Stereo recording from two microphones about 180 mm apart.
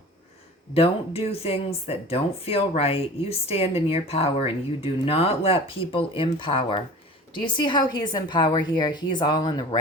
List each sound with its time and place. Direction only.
0.7 s a woman's voice: 35° left (ahead or behind)